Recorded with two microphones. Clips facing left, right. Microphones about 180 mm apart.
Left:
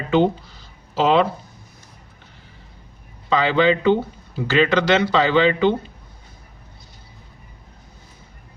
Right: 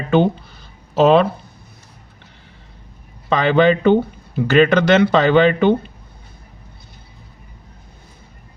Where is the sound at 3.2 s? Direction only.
55° right (ahead or behind).